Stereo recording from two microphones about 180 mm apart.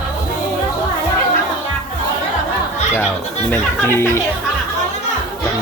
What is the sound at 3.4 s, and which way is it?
Speech, 15° left (ahead or behind).